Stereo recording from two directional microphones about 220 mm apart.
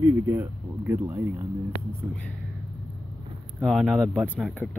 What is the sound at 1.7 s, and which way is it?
Speech, 15° left (ahead or behind).